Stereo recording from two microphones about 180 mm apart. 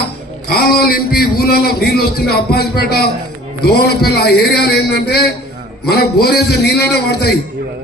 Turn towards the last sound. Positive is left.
turn(degrees=65)  # may be behind; listen again after turning